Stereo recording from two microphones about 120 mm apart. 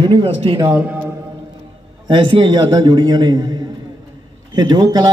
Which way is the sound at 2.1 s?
40° right (ahead or behind).